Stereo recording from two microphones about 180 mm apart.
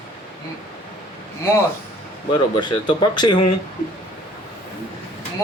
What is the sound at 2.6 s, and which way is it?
Speech, 25° left (ahead or behind).